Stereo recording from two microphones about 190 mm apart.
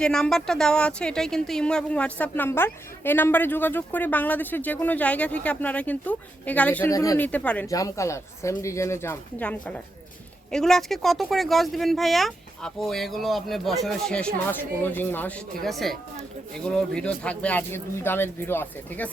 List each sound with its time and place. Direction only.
0.0 s speech: 5° left (ahead or behind)